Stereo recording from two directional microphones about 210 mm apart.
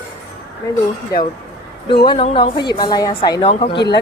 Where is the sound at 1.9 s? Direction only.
25° left (ahead or behind).